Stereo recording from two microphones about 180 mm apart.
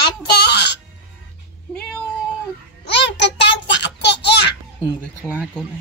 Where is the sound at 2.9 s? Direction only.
75° left (ahead or behind).